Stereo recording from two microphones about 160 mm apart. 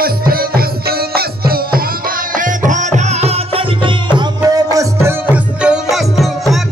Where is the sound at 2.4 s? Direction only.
50° right (ahead or behind); by 3.9 s 35° right (ahead or behind).